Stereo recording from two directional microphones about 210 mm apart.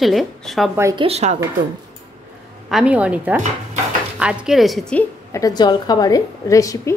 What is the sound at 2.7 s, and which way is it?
A woman's voice, 5° right (ahead or behind).